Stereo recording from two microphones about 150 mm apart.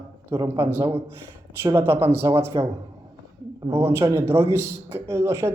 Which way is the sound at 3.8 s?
20° right (ahead or behind).